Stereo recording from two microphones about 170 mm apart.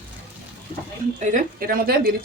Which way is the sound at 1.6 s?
60° right (ahead or behind).